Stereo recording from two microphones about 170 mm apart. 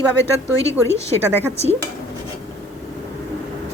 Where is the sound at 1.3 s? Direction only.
10° right (ahead or behind).